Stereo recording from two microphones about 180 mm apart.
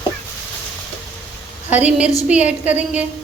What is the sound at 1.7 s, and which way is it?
A woman's voice, 5° right (ahead or behind).